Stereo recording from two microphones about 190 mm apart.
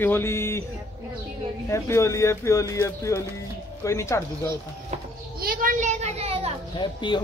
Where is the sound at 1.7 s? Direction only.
15° left (ahead or behind).